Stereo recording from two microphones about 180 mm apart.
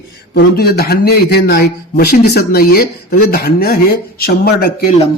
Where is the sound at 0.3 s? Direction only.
60° left (ahead or behind).